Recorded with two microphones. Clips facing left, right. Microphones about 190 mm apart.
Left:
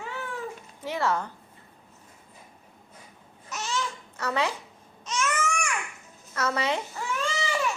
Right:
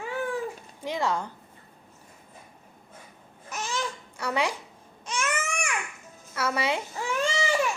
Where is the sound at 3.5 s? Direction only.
15° right (ahead or behind).